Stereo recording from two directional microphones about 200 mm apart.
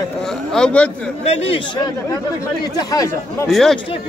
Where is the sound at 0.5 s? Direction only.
5° left (ahead or behind).